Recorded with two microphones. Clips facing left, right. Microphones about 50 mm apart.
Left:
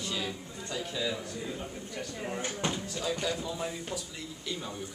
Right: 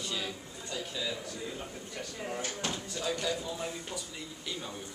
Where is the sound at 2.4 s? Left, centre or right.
Left.